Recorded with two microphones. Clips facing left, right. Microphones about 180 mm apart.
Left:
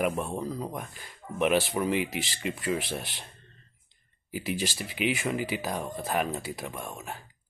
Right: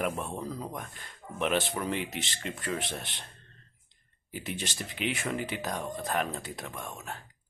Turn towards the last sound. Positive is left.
turn(degrees=5)  # may be behind; listen again after turning